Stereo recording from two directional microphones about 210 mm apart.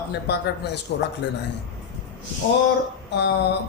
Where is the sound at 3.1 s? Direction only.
55° left (ahead or behind).